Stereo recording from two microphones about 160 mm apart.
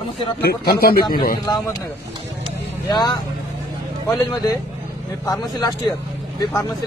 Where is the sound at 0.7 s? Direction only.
70° left (ahead or behind).